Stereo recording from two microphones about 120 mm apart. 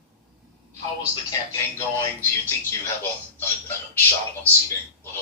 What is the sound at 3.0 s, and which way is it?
Speech, 15° left (ahead or behind).